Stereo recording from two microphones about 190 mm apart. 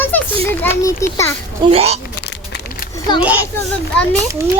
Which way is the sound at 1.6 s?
30° right (ahead or behind).